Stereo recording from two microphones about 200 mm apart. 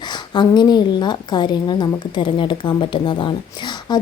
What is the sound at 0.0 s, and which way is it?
A woman's voice, 20° left (ahead or behind).